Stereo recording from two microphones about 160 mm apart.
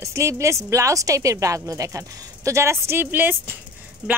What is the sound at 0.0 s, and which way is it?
A woman's voice, 20° right (ahead or behind).